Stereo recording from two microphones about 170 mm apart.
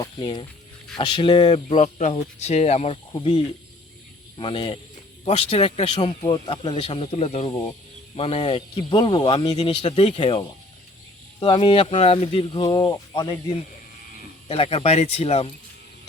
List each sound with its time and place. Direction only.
0.0 s speech: 25° left (ahead or behind)
3.1 s speech: 30° left (ahead or behind)
14.4 s speech: 35° left (ahead or behind)